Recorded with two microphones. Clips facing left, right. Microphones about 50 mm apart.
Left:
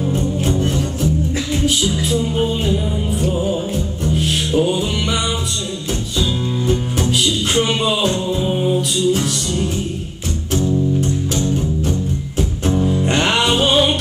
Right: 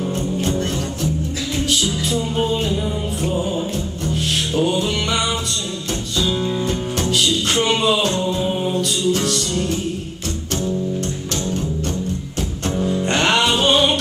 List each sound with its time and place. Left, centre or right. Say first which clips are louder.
0.0 s music: left 2 dB; centre
6.7 s music: left 2 dB; centre
11.0 s music: left 5 dB; centre